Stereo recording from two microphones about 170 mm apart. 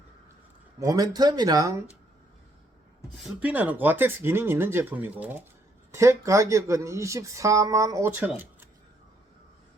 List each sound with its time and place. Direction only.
0.8 s speech: 20° right (ahead or behind)
3.4 s speech: 10° right (ahead or behind)